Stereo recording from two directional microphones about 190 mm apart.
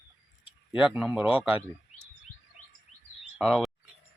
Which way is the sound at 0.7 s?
5° right (ahead or behind).